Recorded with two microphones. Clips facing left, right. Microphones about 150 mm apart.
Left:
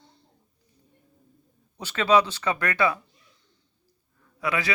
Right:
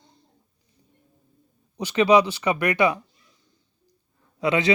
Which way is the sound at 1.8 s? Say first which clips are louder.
Right 4 dB; 15° right (ahead or behind).